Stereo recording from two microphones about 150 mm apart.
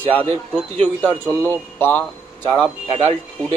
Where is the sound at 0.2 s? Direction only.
40° right (ahead or behind).